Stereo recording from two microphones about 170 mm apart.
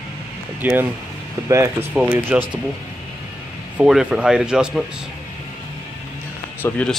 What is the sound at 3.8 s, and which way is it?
Speech, 5° right (ahead or behind).